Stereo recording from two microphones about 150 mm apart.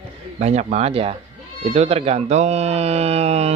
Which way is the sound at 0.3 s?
50° right (ahead or behind).